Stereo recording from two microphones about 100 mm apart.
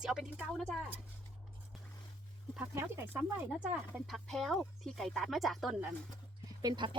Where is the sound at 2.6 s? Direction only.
20° right (ahead or behind).